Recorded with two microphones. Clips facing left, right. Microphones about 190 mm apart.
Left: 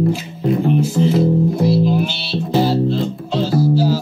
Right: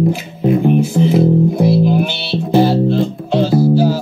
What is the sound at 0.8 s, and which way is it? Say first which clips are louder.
Music: right 3 dB; 55° right (ahead or behind).